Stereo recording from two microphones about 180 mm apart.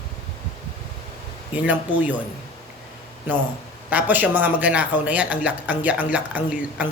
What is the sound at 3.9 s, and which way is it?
A man's voice, 10° right (ahead or behind).